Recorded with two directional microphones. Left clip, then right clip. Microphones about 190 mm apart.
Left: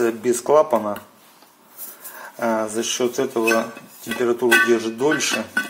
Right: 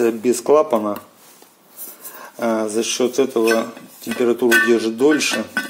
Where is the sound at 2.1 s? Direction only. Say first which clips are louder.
Right 1 dB; 15° right (ahead or behind).